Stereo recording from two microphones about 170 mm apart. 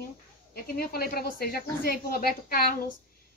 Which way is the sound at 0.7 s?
65° left (ahead or behind).